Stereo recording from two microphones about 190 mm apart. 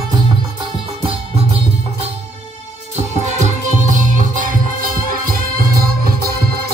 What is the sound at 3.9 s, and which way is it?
Music, 45° right (ahead or behind).